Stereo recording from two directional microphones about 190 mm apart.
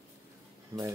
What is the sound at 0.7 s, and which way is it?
Speech, 15° right (ahead or behind).